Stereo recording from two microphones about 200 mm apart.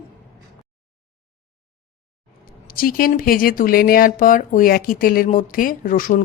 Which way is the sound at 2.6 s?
45° left (ahead or behind).